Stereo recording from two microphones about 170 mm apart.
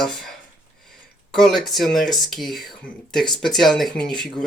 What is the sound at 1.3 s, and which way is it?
Speech, centre (ahead or behind).